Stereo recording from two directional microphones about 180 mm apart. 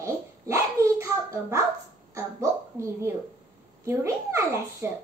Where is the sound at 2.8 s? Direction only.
15° right (ahead or behind).